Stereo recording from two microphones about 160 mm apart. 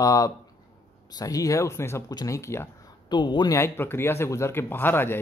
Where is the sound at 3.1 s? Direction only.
30° left (ahead or behind).